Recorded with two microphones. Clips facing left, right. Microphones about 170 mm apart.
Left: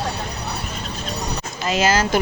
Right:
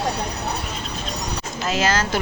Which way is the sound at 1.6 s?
Centre (ahead or behind).